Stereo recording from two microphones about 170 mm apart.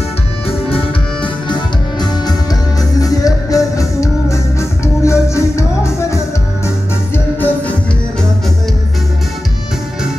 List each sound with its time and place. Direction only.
0.5 s music: 35° left (ahead or behind); by 6.2 s 15° left (ahead or behind)
7.3 s music: 10° left (ahead or behind)